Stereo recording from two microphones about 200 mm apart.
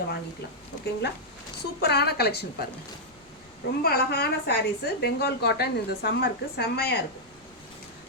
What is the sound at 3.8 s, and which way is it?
A woman's voice, 50° left (ahead or behind).